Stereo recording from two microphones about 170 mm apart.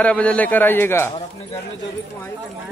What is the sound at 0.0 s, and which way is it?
A man's voice, 5° left (ahead or behind).